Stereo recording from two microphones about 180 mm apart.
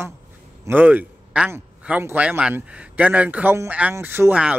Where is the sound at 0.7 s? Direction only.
10° right (ahead or behind).